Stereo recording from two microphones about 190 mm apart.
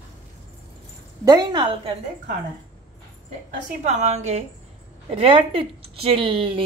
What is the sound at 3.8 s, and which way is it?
A woman's voice, 35° right (ahead or behind).